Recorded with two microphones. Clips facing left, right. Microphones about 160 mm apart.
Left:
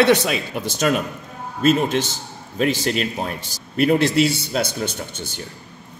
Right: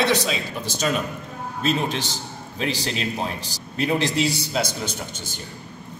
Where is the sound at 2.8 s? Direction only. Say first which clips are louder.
Left 4 dB; 55° left (ahead or behind).